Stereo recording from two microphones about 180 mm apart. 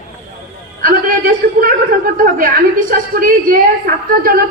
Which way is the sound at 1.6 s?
50° right (ahead or behind).